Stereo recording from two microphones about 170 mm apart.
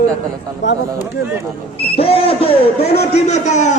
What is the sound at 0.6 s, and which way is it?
Speech, 90° left.